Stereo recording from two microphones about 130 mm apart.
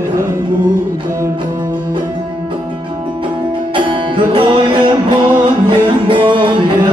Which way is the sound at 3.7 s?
40° right (ahead or behind).